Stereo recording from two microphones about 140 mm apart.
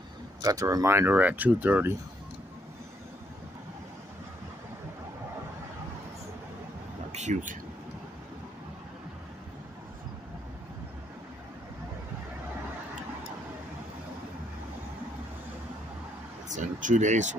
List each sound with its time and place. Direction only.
0.4 s speech: 25° right (ahead or behind)
7.1 s a sound: 55° right (ahead or behind)
16.4 s speech: 60° right (ahead or behind)